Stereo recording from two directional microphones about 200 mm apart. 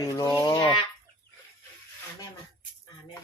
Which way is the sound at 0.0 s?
20° left (ahead or behind).